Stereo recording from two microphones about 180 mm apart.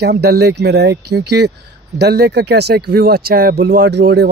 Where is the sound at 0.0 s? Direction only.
65° right (ahead or behind).